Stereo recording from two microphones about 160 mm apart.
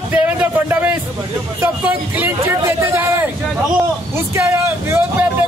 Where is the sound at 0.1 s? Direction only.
10° right (ahead or behind).